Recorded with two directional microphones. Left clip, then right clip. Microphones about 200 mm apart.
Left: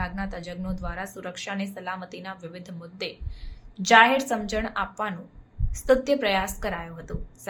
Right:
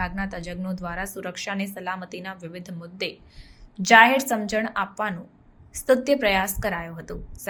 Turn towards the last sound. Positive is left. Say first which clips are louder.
# right 3 dB
turn(degrees=-15)  # may be behind; listen again after turning